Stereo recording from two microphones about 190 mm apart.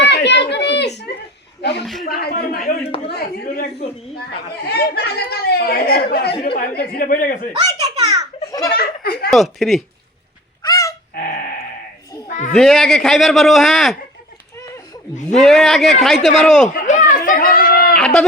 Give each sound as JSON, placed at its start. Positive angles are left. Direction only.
{"t": 0.0, "sound": "a sound", "side_deg": 65}
{"t": 1.8, "sound": "a man's voice", "side_deg": 0}
{"t": 2.0, "sound": "speech", "side_deg": 50}
{"t": 7.5, "sound": "a child's voice", "side_deg": -20}
{"t": 8.4, "sound": "a child's voice", "side_deg": 20}
{"t": 8.7, "sound": "speech", "side_deg": 55}
{"t": 9.3, "sound": "a man's voice", "side_deg": 0}
{"t": 10.6, "sound": "a sound", "side_deg": 20}
{"t": 11.1, "sound": "a sound", "side_deg": 45}
{"t": 12.5, "sound": "a man's voice", "side_deg": 0}
{"t": 15.3, "sound": "a man's voice", "side_deg": 0}
{"t": 16.6, "sound": "speech", "side_deg": 40}
{"t": 17.9, "sound": "a man's voice", "side_deg": 5}